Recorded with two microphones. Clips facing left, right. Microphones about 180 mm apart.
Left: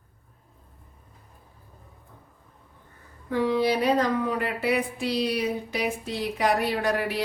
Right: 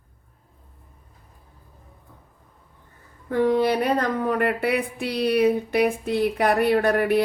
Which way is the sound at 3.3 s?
50° right (ahead or behind).